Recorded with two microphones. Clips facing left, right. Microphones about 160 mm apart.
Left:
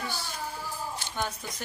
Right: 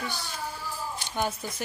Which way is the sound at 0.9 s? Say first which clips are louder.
Right 5 dB; 20° right (ahead or behind).